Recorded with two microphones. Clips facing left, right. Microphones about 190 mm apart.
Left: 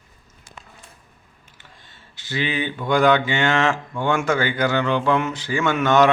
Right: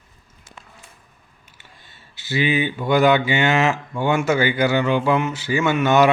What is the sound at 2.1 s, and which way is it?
Speech, 10° right (ahead or behind).